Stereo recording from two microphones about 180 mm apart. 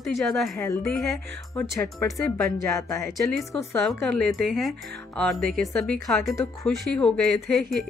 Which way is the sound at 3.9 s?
5° left (ahead or behind).